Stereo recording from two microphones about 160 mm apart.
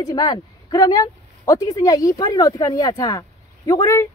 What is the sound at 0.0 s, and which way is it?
Speech, 25° left (ahead or behind).